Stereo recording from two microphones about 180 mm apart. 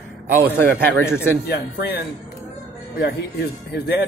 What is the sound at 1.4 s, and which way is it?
Speech, 65° left (ahead or behind).